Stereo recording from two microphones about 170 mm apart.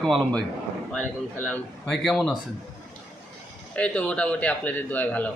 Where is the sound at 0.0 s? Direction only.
Centre (ahead or behind).